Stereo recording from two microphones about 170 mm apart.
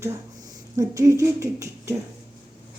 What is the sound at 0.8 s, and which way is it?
Speech, 20° right (ahead or behind).